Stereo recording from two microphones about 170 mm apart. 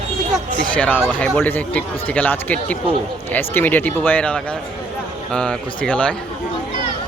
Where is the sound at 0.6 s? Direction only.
10° left (ahead or behind).